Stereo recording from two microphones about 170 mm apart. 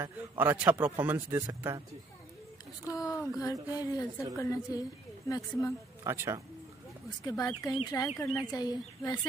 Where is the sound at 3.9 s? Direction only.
20° left (ahead or behind).